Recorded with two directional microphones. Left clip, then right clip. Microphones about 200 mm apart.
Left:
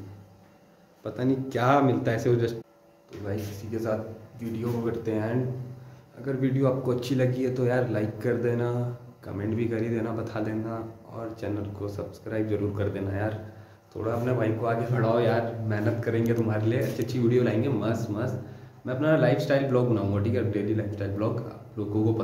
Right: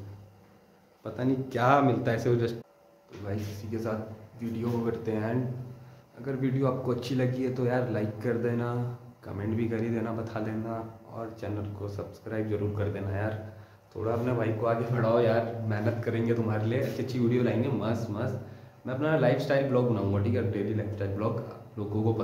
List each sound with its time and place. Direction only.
1.0 s a man's voice: centre (ahead or behind)